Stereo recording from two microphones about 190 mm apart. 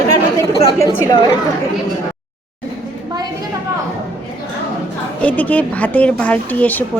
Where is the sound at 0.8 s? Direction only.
20° left (ahead or behind).